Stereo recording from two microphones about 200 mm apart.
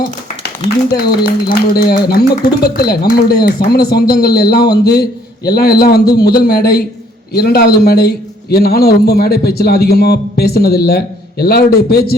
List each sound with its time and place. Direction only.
0.6 s speech: 35° right (ahead or behind)
0.9 s a man's voice: 50° left (ahead or behind)